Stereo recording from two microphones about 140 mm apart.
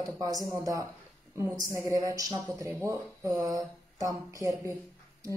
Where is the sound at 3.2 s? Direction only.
25° right (ahead or behind).